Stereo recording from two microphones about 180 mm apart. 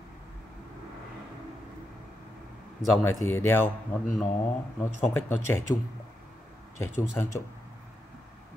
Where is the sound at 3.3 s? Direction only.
15° left (ahead or behind).